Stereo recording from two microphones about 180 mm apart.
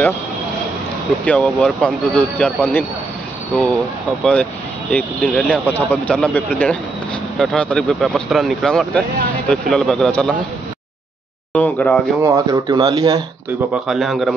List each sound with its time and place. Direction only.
1.2 s speech: 5° left (ahead or behind)
4.2 s speech: 10° left (ahead or behind)
11.5 s speech: 5° left (ahead or behind)
12.2 s speech: 20° right (ahead or behind)
13.8 s speech: centre (ahead or behind)